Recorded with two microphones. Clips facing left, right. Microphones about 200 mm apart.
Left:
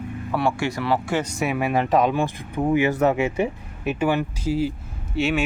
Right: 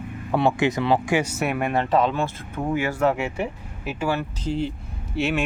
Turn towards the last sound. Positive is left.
turn(degrees=0)  # may be behind; listen again after turning